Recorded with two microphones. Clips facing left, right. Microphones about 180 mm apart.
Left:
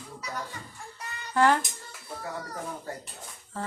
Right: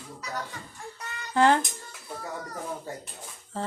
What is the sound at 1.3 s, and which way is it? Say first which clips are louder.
Speech: right 1 dB; 25° right (ahead or behind).